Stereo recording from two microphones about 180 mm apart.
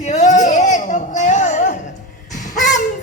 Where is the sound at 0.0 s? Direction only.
40° left (ahead or behind).